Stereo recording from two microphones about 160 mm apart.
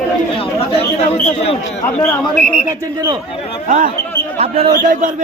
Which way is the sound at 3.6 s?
60° right (ahead or behind).